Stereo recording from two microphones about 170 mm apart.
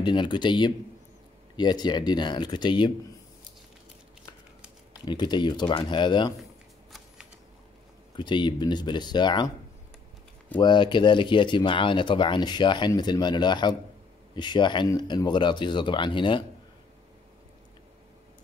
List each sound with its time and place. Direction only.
0.0 s speech: 25° left (ahead or behind)
5.0 s speech: 25° left (ahead or behind)
8.2 s speech: 25° left (ahead or behind)
10.6 s speech: 25° left (ahead or behind)